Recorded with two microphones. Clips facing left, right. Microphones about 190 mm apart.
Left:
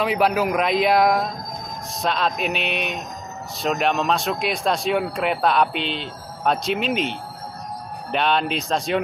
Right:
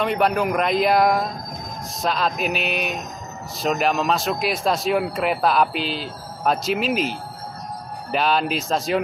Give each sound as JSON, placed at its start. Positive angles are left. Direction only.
{"t": 0.0, "sound": "speech", "side_deg": 0}